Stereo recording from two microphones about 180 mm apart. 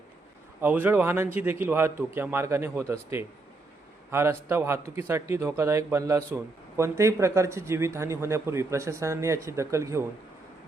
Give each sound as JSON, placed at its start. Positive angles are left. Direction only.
{"t": 0.6, "sound": "speech", "side_deg": -10}